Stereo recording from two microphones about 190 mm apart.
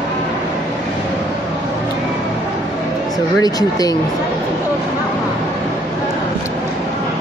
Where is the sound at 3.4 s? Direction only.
20° left (ahead or behind).